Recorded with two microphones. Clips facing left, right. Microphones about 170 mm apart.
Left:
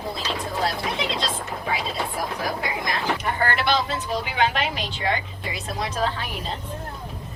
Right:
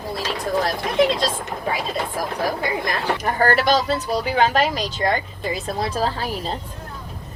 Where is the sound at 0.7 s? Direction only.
45° right (ahead or behind).